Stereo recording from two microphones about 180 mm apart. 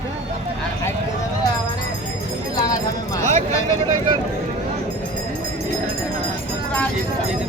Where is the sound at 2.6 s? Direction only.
20° left (ahead or behind).